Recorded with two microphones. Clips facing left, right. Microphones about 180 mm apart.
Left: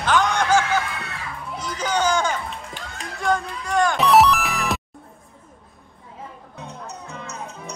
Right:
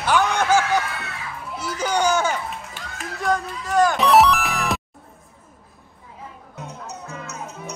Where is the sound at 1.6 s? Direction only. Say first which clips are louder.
Right 1 dB; 5° right (ahead or behind).